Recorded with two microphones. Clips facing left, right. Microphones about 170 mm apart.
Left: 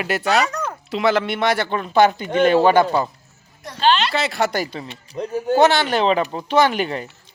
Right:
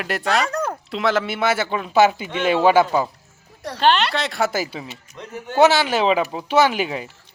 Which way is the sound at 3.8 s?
65° right (ahead or behind).